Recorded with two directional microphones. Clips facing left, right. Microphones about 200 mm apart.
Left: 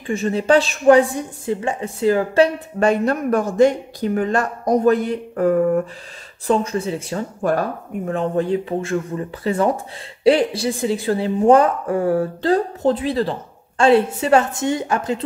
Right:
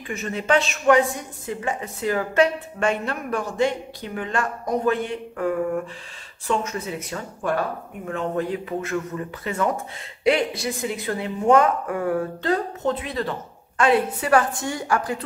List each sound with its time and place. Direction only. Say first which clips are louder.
0.0 s a woman's voice: left 8 dB; 30° left (ahead or behind)